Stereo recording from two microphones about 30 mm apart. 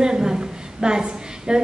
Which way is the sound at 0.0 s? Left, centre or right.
Right.